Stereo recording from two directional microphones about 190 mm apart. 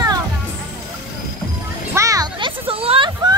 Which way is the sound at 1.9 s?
15° right (ahead or behind).